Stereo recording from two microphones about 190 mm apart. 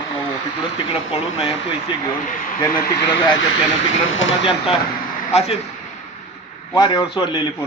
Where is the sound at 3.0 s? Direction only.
60° left (ahead or behind).